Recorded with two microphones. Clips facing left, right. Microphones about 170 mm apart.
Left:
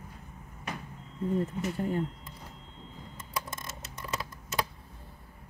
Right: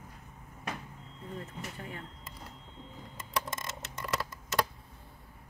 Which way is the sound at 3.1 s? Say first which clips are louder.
Right 3 dB; 75° right (ahead or behind).